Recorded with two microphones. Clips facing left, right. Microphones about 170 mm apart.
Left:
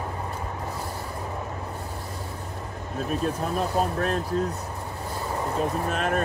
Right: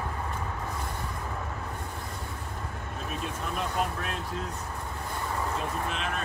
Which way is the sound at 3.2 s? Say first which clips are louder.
Left 6 dB; 40° left (ahead or behind).